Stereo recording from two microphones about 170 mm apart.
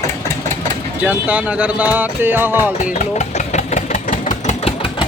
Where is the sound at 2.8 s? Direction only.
45° left (ahead or behind).